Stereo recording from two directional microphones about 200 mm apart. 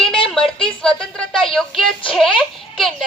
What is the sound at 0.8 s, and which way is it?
A woman's voice, 5° left (ahead or behind).